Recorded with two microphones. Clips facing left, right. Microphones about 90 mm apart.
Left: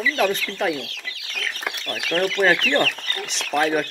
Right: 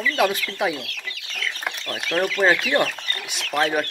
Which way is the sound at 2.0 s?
Centre (ahead or behind).